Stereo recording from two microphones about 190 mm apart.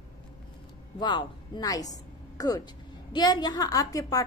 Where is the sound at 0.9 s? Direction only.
25° left (ahead or behind).